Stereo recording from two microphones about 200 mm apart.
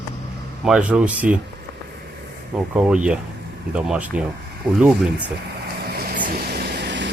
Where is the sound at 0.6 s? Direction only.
5° right (ahead or behind).